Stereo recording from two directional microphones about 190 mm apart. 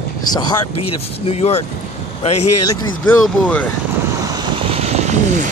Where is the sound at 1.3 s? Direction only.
35° left (ahead or behind).